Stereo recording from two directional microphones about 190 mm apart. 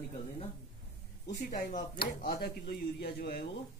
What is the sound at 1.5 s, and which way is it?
Speech, 45° left (ahead or behind).